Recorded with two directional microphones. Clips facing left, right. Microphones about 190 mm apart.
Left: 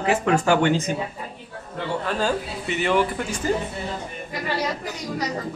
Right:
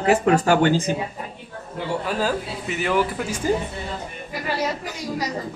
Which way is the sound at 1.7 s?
10° right (ahead or behind).